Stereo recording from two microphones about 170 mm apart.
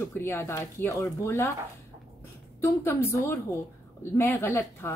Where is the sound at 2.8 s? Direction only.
15° left (ahead or behind).